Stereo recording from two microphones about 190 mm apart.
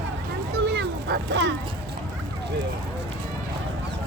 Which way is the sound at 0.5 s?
60° right (ahead or behind).